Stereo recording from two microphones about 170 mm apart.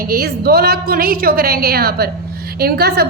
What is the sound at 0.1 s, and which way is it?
A woman's voice, 65° right (ahead or behind).